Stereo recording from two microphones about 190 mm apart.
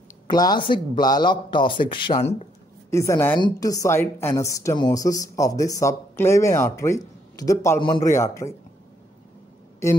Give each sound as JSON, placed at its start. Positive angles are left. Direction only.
{"t": 0.3, "sound": "a man's voice", "side_deg": 20}
{"t": 2.1, "sound": "speech", "side_deg": 35}
{"t": 2.9, "sound": "speech", "side_deg": 15}